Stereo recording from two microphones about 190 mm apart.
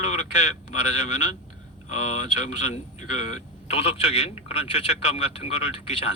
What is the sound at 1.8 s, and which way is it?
Speech, 35° left (ahead or behind).